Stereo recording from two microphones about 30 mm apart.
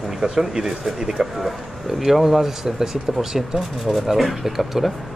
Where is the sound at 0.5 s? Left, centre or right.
Right.